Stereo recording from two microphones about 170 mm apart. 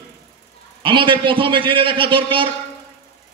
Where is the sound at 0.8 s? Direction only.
30° right (ahead or behind).